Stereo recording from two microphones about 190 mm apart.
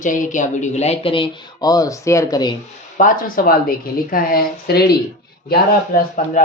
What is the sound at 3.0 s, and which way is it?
A woman's voice, 45° left (ahead or behind).